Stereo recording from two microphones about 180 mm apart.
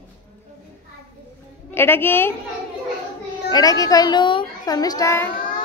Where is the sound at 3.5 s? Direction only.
20° left (ahead or behind).